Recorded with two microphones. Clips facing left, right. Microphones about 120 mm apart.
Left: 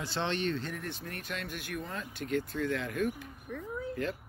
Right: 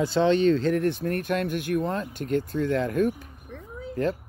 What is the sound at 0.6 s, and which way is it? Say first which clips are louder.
Speech: right 16 dB; 70° right (ahead or behind).